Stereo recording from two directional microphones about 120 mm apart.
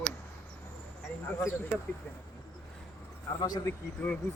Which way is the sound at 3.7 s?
15° left (ahead or behind).